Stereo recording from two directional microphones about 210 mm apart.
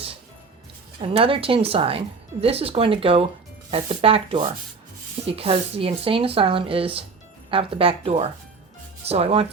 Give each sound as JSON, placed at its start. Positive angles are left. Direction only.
{"t": 1.0, "sound": "speech", "side_deg": -25}